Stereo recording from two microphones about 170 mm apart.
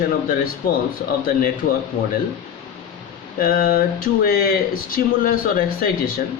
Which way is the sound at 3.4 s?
60° left (ahead or behind).